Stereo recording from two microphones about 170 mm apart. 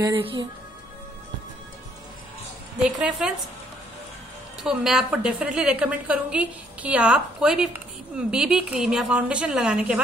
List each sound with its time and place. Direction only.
0.2 s speech: 30° right (ahead or behind)
2.8 s a woman's voice: 5° right (ahead or behind)
4.6 s a woman's voice: centre (ahead or behind)